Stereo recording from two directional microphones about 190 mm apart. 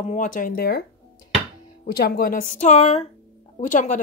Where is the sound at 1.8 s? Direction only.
50° left (ahead or behind).